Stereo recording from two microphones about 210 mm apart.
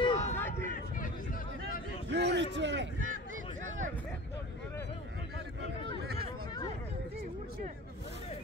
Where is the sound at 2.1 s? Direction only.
55° right (ahead or behind).